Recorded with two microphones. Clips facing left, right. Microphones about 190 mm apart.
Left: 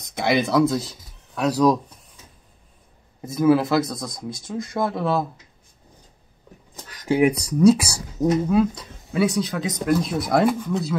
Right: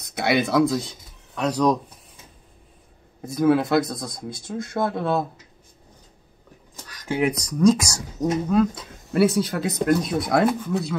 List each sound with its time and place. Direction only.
0.0 s speech: centre (ahead or behind)
3.2 s speech: centre (ahead or behind)
6.9 s speech: 15° left (ahead or behind)
9.1 s speech: 5° right (ahead or behind)